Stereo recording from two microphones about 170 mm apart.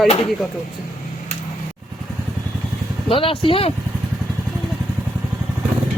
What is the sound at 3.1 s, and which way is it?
Speech, 30° left (ahead or behind).